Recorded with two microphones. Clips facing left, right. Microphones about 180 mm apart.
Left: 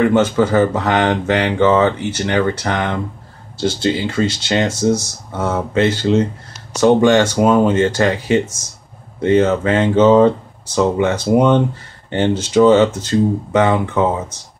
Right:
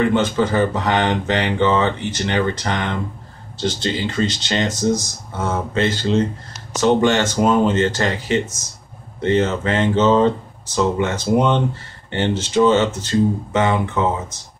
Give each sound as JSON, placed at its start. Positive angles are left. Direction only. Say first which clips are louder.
{"t": 0.2, "sound": "speech", "louder": "left 4 dB", "side_deg": 10}
{"t": 3.8, "sound": "speech", "louder": "left 4 dB", "side_deg": 10}
{"t": 4.7, "sound": "speech", "louder": "left 3 dB", "side_deg": -15}
{"t": 5.4, "sound": "speech", "louder": "left 4 dB", "side_deg": 15}